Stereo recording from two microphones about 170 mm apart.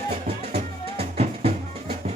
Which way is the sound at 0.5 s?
35° right (ahead or behind).